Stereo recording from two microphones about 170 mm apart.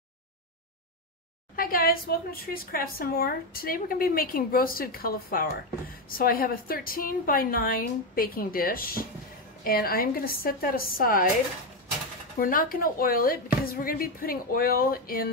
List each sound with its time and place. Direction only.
1.6 s a woman's voice: 55° left (ahead or behind)
12.4 s a woman's voice: 55° left (ahead or behind)